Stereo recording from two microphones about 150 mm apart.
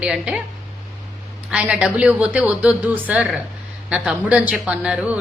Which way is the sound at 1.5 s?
5° right (ahead or behind).